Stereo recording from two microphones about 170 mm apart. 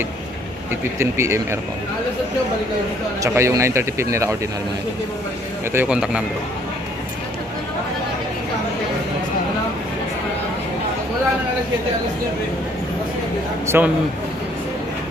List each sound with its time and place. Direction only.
0.7 s a man's voice: 15° right (ahead or behind)
3.2 s a man's voice: 15° right (ahead or behind)
5.7 s a man's voice: 10° right (ahead or behind)
13.7 s a man's voice: 10° right (ahead or behind)